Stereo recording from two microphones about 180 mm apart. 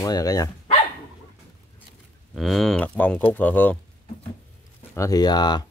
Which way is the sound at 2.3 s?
Centre (ahead or behind).